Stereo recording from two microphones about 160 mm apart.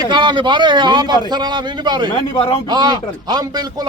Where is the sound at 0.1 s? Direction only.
30° right (ahead or behind).